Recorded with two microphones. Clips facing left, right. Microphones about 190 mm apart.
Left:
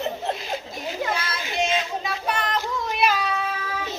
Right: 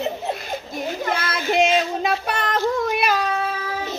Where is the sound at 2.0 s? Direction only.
60° right (ahead or behind); by 3.5 s 45° right (ahead or behind).